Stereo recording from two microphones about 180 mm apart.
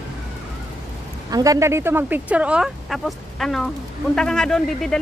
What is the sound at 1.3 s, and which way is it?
Speech, 20° right (ahead or behind).